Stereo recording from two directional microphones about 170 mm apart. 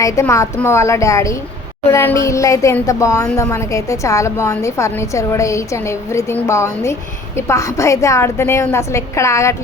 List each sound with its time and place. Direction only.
0.0 s a woman's voice: 15° left (ahead or behind)